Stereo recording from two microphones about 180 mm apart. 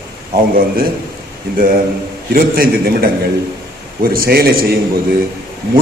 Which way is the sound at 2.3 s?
55° right (ahead or behind).